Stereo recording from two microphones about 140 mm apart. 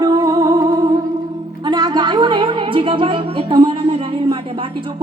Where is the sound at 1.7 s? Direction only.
30° right (ahead or behind).